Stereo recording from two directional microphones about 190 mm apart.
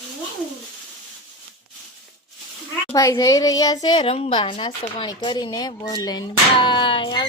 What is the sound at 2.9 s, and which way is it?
A woman's voice, 15° left (ahead or behind).